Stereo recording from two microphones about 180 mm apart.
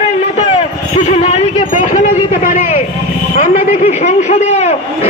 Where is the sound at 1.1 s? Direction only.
35° left (ahead or behind).